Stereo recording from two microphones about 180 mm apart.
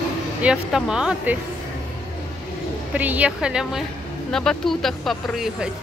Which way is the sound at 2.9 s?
10° right (ahead or behind).